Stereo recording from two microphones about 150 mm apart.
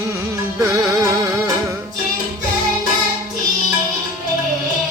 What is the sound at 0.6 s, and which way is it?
Music, 20° right (ahead or behind).